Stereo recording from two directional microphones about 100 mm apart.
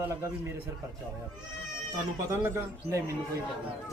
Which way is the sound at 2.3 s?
30° right (ahead or behind).